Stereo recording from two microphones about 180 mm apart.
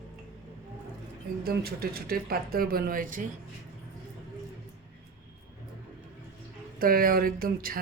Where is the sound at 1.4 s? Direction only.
60° right (ahead or behind).